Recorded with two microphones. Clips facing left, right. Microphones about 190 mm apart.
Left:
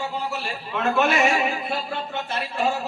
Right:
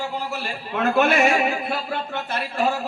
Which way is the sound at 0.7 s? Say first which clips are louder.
Right 2 dB; 55° right (ahead or behind).